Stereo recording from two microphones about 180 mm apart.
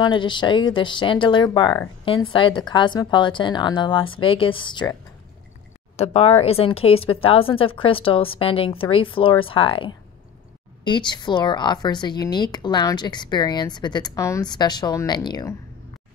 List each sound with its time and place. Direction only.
0.0 s speech: 25° left (ahead or behind)
5.9 s speech: 35° left (ahead or behind)